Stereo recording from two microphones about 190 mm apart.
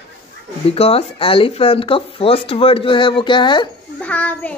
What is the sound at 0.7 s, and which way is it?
Speech, 30° left (ahead or behind).